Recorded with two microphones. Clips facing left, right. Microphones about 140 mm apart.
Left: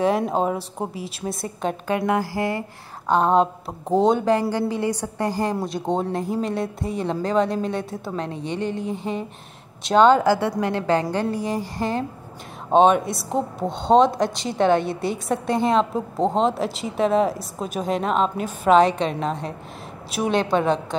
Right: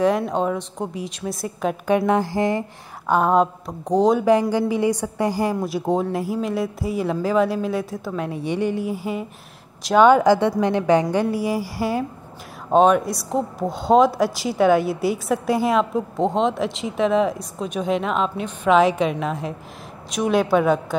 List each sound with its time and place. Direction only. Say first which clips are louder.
0.7 s a woman's voice: right 1 dB; 5° left (ahead or behind)
1.9 s speech: right 4 dB; 20° right (ahead or behind)
3.3 s a woman's voice: right 1 dB; centre (ahead or behind)
4.3 s a woman's voice: right 3 dB; 15° right (ahead or behind)
20.2 s a woman's voice: right 2 dB; 5° right (ahead or behind)